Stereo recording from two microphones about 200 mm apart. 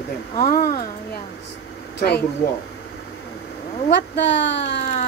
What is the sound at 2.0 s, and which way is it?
Speech, 55° left (ahead or behind).